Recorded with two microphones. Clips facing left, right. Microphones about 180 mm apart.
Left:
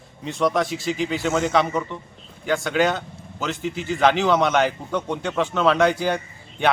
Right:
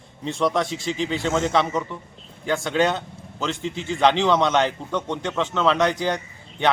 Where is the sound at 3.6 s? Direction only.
25° right (ahead or behind).